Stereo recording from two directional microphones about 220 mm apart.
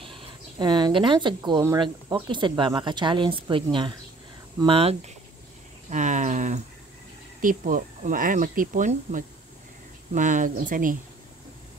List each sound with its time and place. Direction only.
0.6 s speech: 20° right (ahead or behind); by 11.0 s 40° right (ahead or behind)